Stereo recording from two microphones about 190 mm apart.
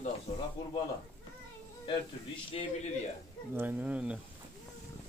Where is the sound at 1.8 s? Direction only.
25° left (ahead or behind).